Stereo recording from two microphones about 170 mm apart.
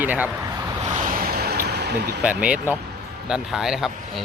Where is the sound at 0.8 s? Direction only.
50° right (ahead or behind); by 2.2 s 75° right (ahead or behind).